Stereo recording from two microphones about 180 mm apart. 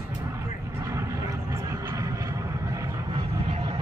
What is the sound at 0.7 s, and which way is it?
Vehicle, 15° right (ahead or behind).